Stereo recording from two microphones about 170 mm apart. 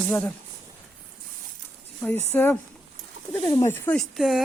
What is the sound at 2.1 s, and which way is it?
Speech, 10° left (ahead or behind).